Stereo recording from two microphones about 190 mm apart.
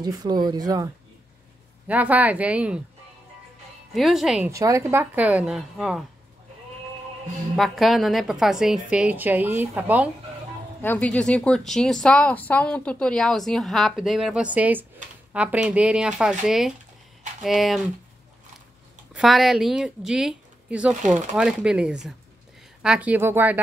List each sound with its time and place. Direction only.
0.0 s speech: 20° right (ahead or behind)
1.9 s speech: 10° right (ahead or behind)
3.9 s a woman's voice: centre (ahead or behind)
4.5 s a woman's voice: 15° right (ahead or behind)
7.5 s a woman's voice: centre (ahead or behind)
10.8 s a woman's voice: 10° left (ahead or behind)
19.1 s a woman's voice: centre (ahead or behind)
21.0 s speech: 40° right (ahead or behind)
21.4 s a woman's voice: 5° right (ahead or behind)